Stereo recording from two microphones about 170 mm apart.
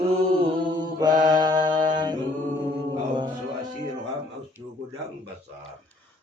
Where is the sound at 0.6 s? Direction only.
25° right (ahead or behind).